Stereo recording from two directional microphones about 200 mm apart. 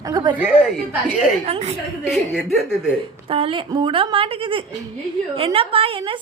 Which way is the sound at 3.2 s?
25° right (ahead or behind).